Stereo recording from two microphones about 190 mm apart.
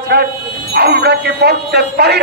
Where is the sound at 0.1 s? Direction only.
55° right (ahead or behind).